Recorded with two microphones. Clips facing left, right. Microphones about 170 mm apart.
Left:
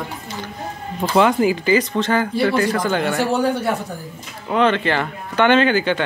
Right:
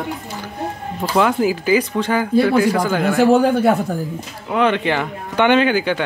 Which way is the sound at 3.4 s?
55° right (ahead or behind).